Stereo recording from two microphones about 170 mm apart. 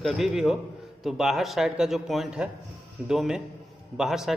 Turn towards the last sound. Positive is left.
turn(degrees=0)  # may be behind; listen again after turning